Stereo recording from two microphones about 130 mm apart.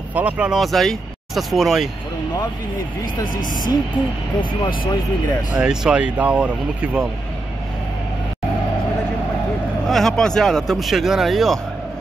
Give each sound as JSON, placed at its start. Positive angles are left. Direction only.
{"t": 0.1, "sound": "speech", "side_deg": -10}
{"t": 5.6, "sound": "speech", "side_deg": -5}
{"t": 9.8, "sound": "speech", "side_deg": 5}